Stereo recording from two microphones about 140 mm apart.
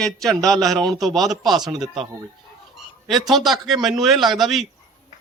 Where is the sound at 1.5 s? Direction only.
30° right (ahead or behind).